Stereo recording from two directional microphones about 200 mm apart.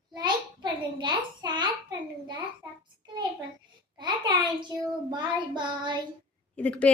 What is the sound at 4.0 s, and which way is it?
Child singing, 20° right (ahead or behind).